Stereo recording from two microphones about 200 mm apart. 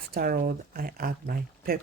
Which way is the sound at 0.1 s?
50° right (ahead or behind).